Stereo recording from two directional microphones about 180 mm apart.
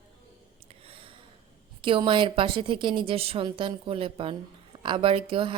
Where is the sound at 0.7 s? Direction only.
30° right (ahead or behind).